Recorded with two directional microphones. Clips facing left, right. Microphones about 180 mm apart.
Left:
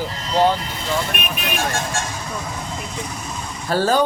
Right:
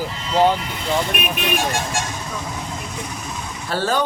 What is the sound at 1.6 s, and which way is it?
Speech, 15° right (ahead or behind).